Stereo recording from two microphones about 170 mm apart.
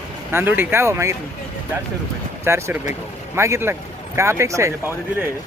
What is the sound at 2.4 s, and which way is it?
Speech, 15° right (ahead or behind).